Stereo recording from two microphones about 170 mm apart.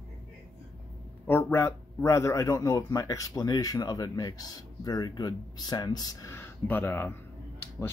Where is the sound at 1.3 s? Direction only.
15° left (ahead or behind).